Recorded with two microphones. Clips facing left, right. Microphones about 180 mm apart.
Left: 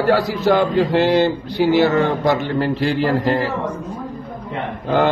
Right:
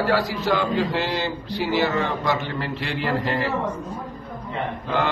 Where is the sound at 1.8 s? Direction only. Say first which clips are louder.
Left 7 dB; 40° left (ahead or behind).